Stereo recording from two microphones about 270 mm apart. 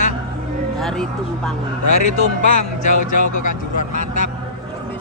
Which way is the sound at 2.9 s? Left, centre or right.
Left.